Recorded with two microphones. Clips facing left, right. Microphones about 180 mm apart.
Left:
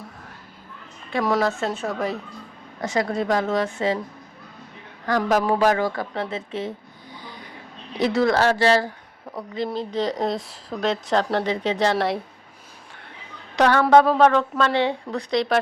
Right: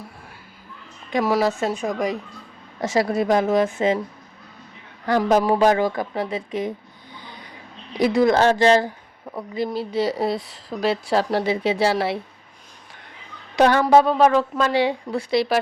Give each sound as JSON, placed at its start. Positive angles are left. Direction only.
{"t": 1.2, "sound": "a woman's voice", "side_deg": -5}
{"t": 1.5, "sound": "speech", "side_deg": -15}
{"t": 2.8, "sound": "speech", "side_deg": -25}
{"t": 5.4, "sound": "speech", "side_deg": -20}
{"t": 7.9, "sound": "speech", "side_deg": -15}
{"t": 9.7, "sound": "speech", "side_deg": -10}
{"t": 13.6, "sound": "speech", "side_deg": -15}
{"t": 13.9, "sound": "speech", "side_deg": -5}